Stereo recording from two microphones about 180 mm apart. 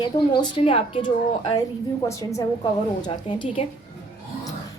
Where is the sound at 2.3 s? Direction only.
20° left (ahead or behind).